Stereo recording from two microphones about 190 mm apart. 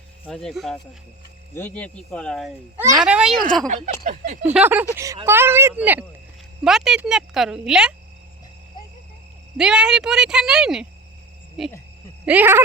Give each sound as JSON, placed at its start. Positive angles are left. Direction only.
{"t": 0.3, "sound": "speech", "side_deg": 5}
{"t": 4.0, "sound": "speech", "side_deg": -45}
{"t": 4.5, "sound": "speech", "side_deg": -10}
{"t": 9.6, "sound": "speech", "side_deg": -5}
{"t": 12.2, "sound": "speech", "side_deg": -10}